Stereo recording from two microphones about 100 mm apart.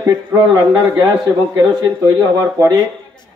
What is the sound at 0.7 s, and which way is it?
Speech, 15° right (ahead or behind).